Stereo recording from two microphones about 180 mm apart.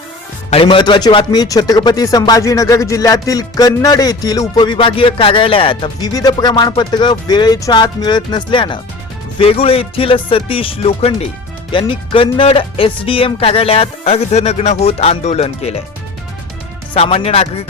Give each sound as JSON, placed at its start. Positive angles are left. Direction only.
{"t": 0.5, "sound": "speech", "side_deg": 30}
{"t": 16.9, "sound": "speech", "side_deg": 30}